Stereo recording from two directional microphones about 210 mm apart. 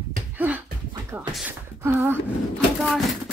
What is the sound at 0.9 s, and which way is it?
Music, 15° right (ahead or behind).